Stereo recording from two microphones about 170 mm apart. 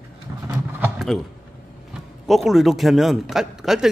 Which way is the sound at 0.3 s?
15° right (ahead or behind).